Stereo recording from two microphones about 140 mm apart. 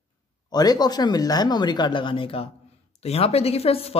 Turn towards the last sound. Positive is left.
turn(degrees=45)  # may be behind; listen again after turning